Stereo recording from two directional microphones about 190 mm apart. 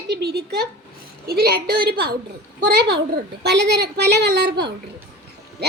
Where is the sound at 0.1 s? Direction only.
55° right (ahead or behind).